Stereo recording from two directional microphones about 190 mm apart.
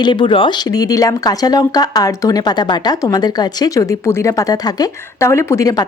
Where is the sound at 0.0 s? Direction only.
25° left (ahead or behind).